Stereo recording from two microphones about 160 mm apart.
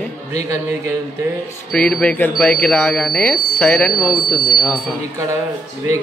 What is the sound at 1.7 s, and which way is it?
A man's voice, 5° left (ahead or behind).